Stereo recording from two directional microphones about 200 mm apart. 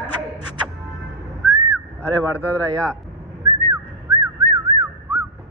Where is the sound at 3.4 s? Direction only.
15° right (ahead or behind).